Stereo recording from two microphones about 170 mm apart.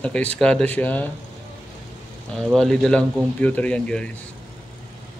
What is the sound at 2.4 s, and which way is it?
Speech, 5° left (ahead or behind).